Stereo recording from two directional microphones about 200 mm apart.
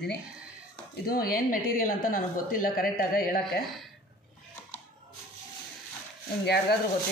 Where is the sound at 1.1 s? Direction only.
50° left (ahead or behind).